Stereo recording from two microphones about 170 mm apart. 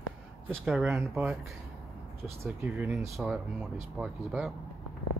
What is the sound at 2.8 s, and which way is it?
Speech, 15° right (ahead or behind).